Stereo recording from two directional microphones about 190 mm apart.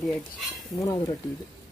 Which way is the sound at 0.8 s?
15° left (ahead or behind).